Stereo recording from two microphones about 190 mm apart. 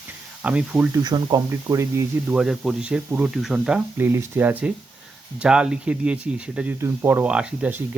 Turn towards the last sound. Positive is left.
turn(degrees=-5)  # may be behind; listen again after turning